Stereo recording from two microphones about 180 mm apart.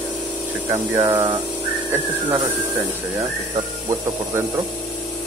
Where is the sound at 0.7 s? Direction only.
20° right (ahead or behind).